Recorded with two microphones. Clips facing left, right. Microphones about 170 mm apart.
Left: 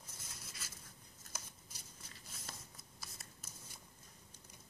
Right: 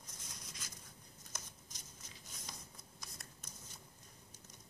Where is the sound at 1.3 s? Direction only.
5° left (ahead or behind).